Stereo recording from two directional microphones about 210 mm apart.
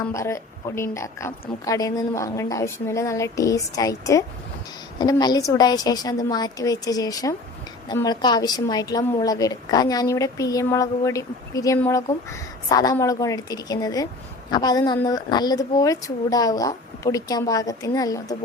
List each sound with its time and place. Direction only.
0.1 s a woman's voice: 15° left (ahead or behind)